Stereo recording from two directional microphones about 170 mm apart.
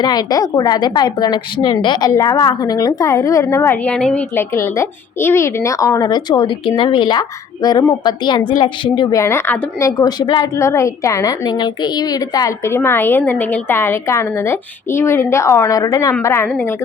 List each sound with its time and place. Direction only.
0.0 s a woman's voice: 25° left (ahead or behind)